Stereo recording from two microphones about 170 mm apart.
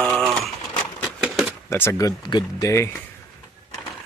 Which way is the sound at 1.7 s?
15° left (ahead or behind).